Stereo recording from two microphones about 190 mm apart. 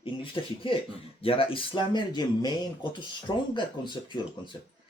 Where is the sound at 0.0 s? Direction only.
25° left (ahead or behind).